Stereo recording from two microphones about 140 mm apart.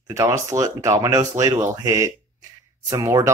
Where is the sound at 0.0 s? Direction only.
20° right (ahead or behind).